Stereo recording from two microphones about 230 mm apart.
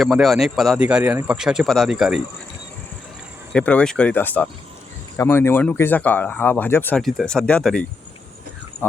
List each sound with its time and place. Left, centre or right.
0.0 s a man's voice: centre
3.5 s a man's voice: centre